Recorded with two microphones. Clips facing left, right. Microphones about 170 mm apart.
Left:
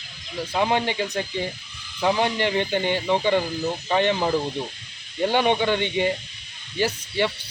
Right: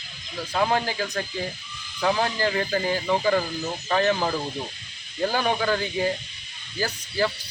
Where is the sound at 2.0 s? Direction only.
15° left (ahead or behind).